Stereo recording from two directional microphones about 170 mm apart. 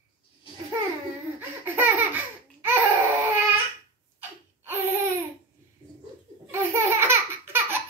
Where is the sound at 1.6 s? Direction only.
10° right (ahead or behind).